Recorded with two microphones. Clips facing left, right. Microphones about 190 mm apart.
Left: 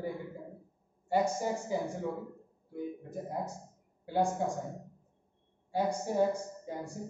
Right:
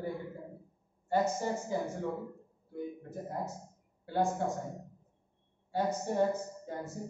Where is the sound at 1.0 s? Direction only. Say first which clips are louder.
Left 1 dB; 10° left (ahead or behind).